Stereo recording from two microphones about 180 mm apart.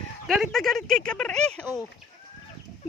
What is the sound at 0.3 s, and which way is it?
Speech, centre (ahead or behind).